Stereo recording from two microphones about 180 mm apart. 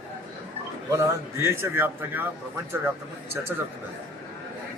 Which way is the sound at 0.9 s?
15° right (ahead or behind).